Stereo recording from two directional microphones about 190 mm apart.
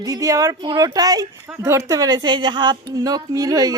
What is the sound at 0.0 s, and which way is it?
Speech, 20° right (ahead or behind).